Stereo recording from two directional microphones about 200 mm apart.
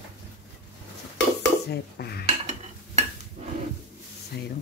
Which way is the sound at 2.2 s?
30° right (ahead or behind).